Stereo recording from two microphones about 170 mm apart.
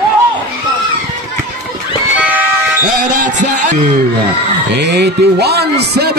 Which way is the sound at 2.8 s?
55° right (ahead or behind).